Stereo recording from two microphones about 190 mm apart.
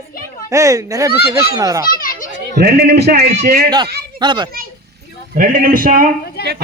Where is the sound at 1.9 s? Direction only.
45° left (ahead or behind).